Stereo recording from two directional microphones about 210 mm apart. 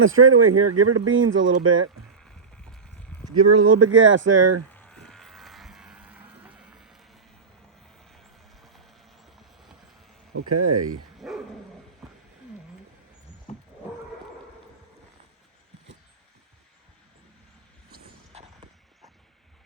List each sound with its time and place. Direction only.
0.0 s speech: 75° right (ahead or behind)
3.3 s speech: 75° right (ahead or behind)
4.7 s vehicle: 5° left (ahead or behind)
8.6 s clip-clop: centre (ahead or behind)
10.3 s speech: 90° right
11.2 s dog: centre (ahead or behind)
12.0 s a sound: centre (ahead or behind)
13.5 s wild animals: 30° left (ahead or behind)
18.3 s clip-clop: 30° right (ahead or behind)